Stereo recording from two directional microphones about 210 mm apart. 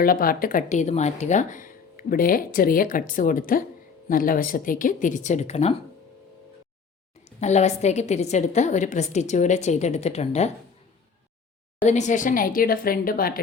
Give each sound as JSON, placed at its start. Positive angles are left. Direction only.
{"t": 0.0, "sound": "speech", "side_deg": 45}
{"t": 7.3, "sound": "speech", "side_deg": 35}
{"t": 11.9, "sound": "a woman's voice", "side_deg": 35}